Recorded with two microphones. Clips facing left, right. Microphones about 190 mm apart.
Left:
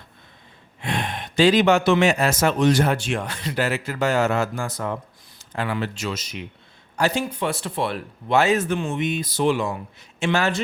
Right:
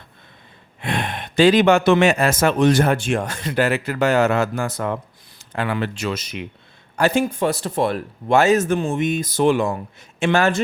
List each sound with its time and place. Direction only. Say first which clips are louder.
0.8 s speech: right 2 dB; 55° right (ahead or behind)